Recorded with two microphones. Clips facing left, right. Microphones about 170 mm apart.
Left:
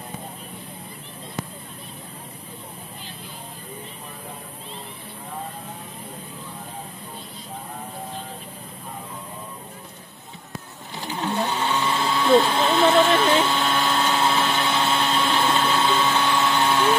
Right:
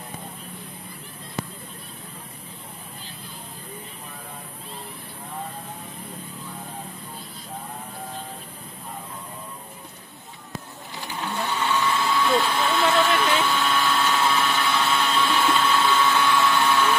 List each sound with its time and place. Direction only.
11.2 s printer: 25° left (ahead or behind)